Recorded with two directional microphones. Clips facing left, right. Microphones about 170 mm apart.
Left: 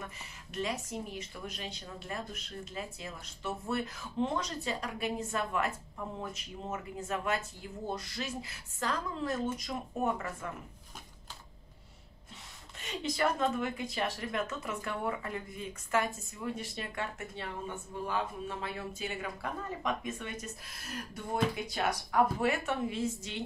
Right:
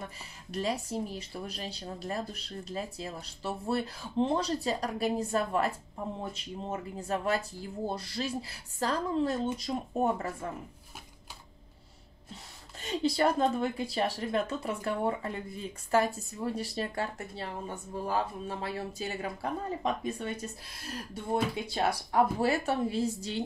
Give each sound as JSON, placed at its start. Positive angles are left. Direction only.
{"t": 0.0, "sound": "speech", "side_deg": -35}
{"t": 12.8, "sound": "speech", "side_deg": -35}